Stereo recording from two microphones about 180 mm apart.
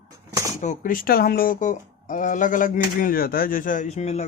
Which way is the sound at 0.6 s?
45° left (ahead or behind).